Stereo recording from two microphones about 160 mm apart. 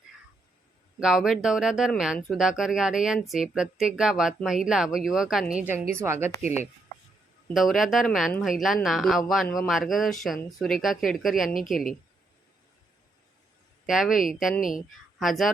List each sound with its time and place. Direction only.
0.9 s speech: 5° right (ahead or behind)
7.5 s speech: centre (ahead or behind)
13.8 s a woman's voice: centre (ahead or behind)